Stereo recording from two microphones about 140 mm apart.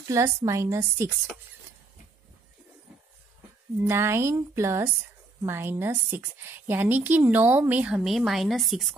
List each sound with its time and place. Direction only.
0.1 s a woman's voice: 20° right (ahead or behind)
3.8 s a woman's voice: 20° right (ahead or behind); by 8.8 s centre (ahead or behind)